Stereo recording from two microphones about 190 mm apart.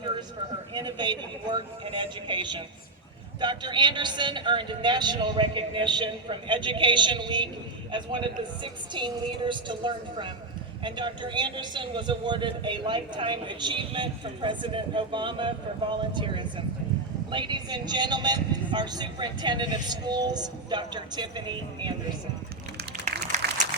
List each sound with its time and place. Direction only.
0.7 s a man's voice: 25° right (ahead or behind)
8.6 s a man's voice: 25° right (ahead or behind)
22.9 s a sound: 60° right (ahead or behind)